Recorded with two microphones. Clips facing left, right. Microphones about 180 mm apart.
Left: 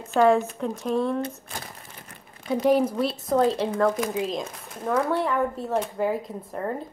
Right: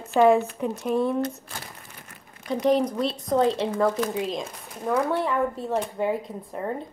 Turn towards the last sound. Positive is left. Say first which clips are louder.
# even
turn(degrees=0)  # may be behind; listen again after turning